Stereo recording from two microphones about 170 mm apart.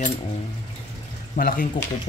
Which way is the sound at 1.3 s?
55° left (ahead or behind).